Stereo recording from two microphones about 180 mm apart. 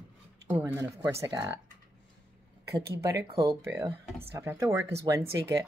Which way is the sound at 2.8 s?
15° right (ahead or behind).